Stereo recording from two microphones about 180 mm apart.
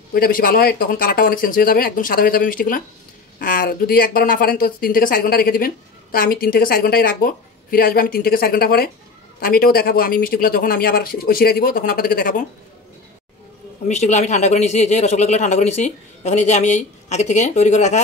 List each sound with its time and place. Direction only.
0.1 s speech: 55° left (ahead or behind)
13.8 s a man's voice: 40° left (ahead or behind)